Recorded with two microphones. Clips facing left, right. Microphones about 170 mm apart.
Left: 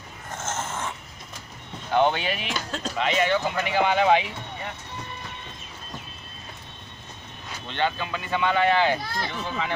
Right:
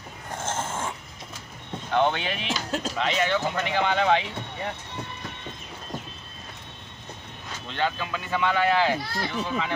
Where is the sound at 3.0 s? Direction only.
5° left (ahead or behind).